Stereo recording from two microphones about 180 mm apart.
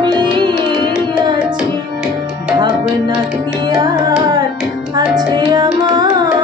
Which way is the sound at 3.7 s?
25° right (ahead or behind).